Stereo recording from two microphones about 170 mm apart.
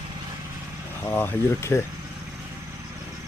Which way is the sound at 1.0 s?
10° left (ahead or behind).